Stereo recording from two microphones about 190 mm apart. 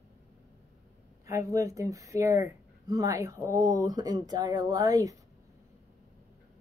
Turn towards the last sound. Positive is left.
turn(degrees=-20)  # may be behind; listen again after turning